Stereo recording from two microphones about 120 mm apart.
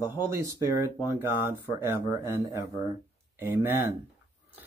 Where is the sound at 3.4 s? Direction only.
20° right (ahead or behind).